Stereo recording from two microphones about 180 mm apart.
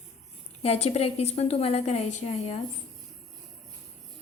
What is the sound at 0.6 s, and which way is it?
A woman's voice, 35° left (ahead or behind).